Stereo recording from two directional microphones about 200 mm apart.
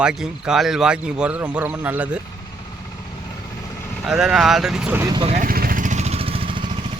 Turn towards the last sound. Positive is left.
turn(degrees=-25)  # may be behind; listen again after turning